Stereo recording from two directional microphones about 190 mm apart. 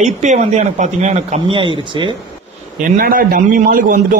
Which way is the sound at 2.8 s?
45° right (ahead or behind).